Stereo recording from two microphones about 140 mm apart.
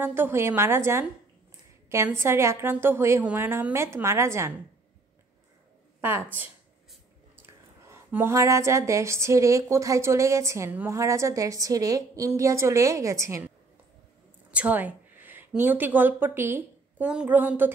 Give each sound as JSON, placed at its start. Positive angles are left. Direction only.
{"t": 0.0, "sound": "a woman's voice", "side_deg": -15}
{"t": 5.9, "sound": "a woman's voice", "side_deg": -15}
{"t": 14.5, "sound": "a woman's voice", "side_deg": -10}